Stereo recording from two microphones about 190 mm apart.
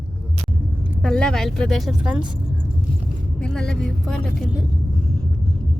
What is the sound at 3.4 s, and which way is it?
Speech, 5° left (ahead or behind).